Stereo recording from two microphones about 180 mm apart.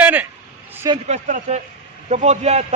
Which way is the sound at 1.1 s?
40° right (ahead or behind).